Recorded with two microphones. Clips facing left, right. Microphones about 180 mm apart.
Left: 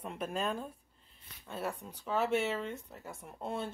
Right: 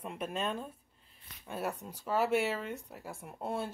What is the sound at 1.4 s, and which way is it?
Speech, 10° right (ahead or behind).